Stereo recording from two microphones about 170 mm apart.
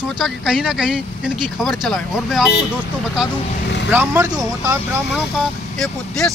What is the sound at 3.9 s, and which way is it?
Speech, 10° right (ahead or behind).